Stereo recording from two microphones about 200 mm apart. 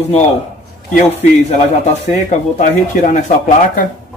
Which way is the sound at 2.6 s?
40° left (ahead or behind).